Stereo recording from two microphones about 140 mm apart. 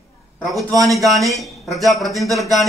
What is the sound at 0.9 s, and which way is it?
A man's voice, centre (ahead or behind).